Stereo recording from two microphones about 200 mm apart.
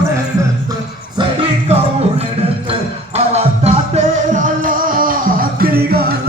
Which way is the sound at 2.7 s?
30° right (ahead or behind).